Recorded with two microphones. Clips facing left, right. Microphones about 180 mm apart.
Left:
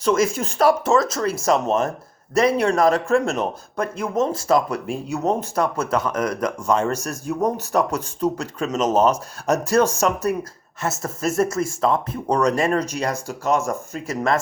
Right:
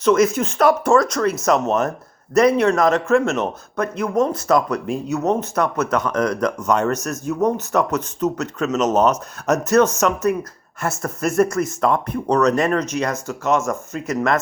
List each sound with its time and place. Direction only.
0.0 s speech: 30° left (ahead or behind)
6.1 s speech: 10° left (ahead or behind)
6.7 s speech: 30° left (ahead or behind)